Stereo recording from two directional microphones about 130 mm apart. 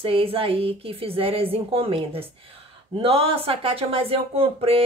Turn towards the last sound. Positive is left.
turn(degrees=-45)  # may be behind; listen again after turning